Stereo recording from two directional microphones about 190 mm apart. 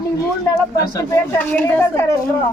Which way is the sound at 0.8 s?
15° left (ahead or behind).